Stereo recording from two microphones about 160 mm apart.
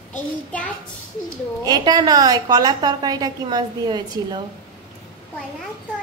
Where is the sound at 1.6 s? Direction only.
25° right (ahead or behind).